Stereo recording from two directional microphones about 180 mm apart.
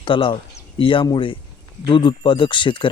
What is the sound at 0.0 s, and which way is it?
Speech, 30° left (ahead or behind).